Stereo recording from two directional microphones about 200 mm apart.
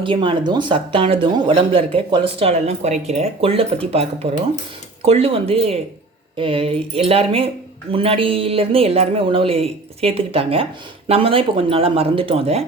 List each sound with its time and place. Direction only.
0.0 s speech: 25° right (ahead or behind)